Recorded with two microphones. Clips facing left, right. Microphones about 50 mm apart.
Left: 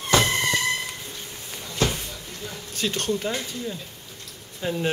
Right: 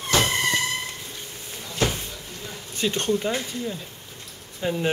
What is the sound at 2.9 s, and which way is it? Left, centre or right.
Speech, right.